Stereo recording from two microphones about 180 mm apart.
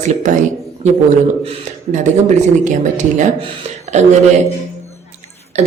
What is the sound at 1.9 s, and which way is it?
Speech, 45° right (ahead or behind).